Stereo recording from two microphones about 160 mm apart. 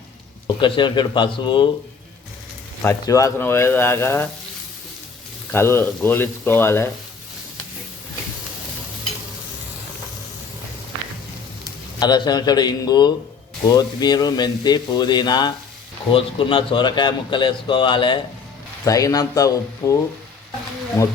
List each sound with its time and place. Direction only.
0.4 s speech: 30° left (ahead or behind)
2.8 s speech: 20° left (ahead or behind)
5.5 s speech: 15° left (ahead or behind)
11.9 s speech: 25° left (ahead or behind)